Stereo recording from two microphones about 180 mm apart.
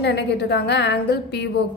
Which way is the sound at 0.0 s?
70° left (ahead or behind).